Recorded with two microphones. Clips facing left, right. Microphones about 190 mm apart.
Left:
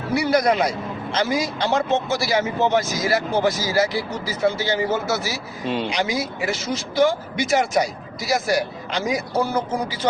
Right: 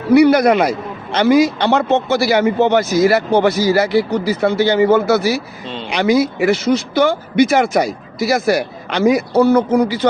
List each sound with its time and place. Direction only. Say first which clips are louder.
0.1 s a man's voice: right 9 dB; 65° right (ahead or behind)